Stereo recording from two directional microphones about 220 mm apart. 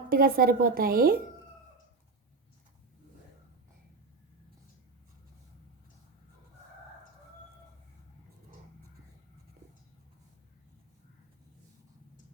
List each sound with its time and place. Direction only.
0.1 s a woman's voice: 40° right (ahead or behind)